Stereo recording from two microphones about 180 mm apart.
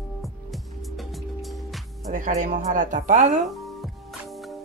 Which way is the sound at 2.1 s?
45° right (ahead or behind).